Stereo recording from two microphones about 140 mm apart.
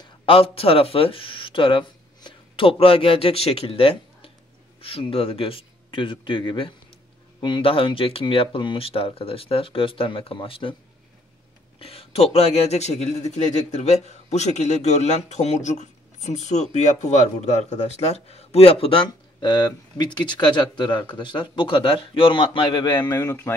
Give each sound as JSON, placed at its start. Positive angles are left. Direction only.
{"t": 0.0, "sound": "speech", "side_deg": 35}
{"t": 11.8, "sound": "a man's voice", "side_deg": 45}